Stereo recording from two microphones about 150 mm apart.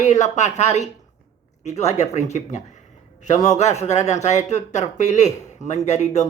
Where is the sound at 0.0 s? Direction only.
50° left (ahead or behind).